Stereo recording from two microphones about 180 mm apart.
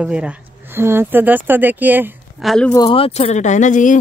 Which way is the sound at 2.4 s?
5° left (ahead or behind).